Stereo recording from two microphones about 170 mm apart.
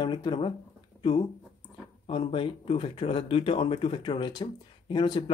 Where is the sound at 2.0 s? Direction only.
30° left (ahead or behind).